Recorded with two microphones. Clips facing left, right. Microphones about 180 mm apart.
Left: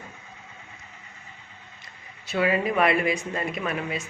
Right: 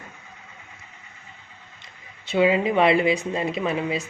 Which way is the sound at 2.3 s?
20° right (ahead or behind).